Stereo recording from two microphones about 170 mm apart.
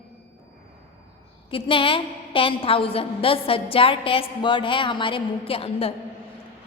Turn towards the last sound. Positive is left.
turn(degrees=35)  # may be behind; listen again after turning